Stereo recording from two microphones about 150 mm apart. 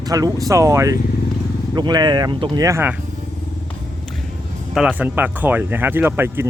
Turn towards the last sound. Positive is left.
turn(degrees=-15)  # may be behind; listen again after turning